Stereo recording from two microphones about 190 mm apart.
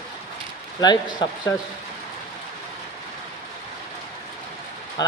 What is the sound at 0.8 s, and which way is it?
Speech, 20° left (ahead or behind).